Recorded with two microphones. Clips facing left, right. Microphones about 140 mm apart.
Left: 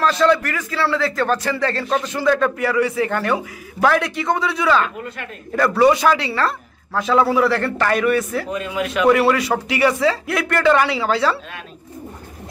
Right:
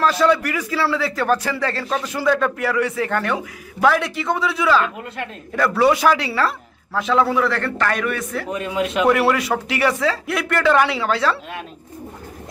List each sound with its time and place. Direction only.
0.0 s a man's voice: 5° right (ahead or behind)
8.5 s speech: 25° right (ahead or behind)
9.0 s a man's voice: 5° right (ahead or behind)